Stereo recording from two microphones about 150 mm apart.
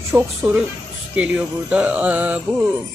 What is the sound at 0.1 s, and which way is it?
Speech, 5° right (ahead or behind).